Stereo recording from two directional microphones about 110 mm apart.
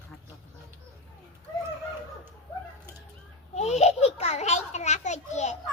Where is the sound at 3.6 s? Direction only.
85° left.